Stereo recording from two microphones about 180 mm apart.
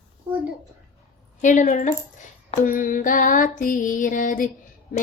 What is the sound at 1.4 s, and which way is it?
Music, 45° left (ahead or behind).